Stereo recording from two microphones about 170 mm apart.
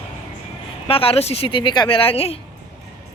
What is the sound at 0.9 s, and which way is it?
A woman's voice, 35° left (ahead or behind).